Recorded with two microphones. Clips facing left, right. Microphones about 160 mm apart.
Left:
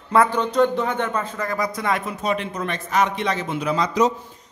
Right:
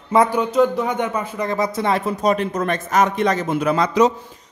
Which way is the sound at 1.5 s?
25° right (ahead or behind).